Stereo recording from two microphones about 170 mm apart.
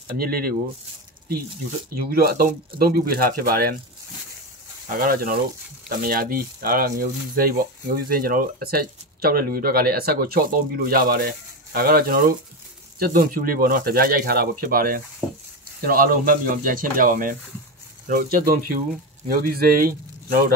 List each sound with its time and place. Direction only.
0.2 s speech: 60° right (ahead or behind)
2.0 s speech: 60° right (ahead or behind)
4.8 s speech: 55° right (ahead or behind)
15.2 s a sound: 10° right (ahead or behind)
15.8 s speech: 60° right (ahead or behind)